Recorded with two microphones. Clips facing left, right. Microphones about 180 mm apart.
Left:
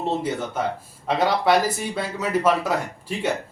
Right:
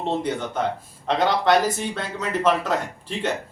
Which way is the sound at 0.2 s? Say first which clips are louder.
Right 1 dB; 5° left (ahead or behind).